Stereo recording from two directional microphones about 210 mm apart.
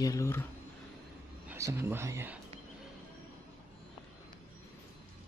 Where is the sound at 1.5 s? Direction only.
15° right (ahead or behind).